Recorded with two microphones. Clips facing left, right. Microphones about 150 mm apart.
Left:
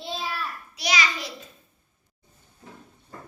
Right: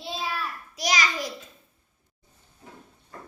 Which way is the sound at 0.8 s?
45° right (ahead or behind).